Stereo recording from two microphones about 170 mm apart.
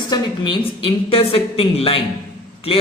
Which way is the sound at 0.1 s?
30° left (ahead or behind).